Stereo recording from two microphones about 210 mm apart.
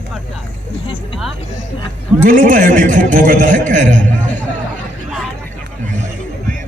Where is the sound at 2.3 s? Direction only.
40° right (ahead or behind).